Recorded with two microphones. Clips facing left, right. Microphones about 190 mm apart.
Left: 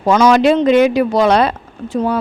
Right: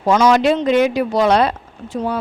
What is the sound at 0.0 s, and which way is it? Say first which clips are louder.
Speech: left 3 dB; 90° left.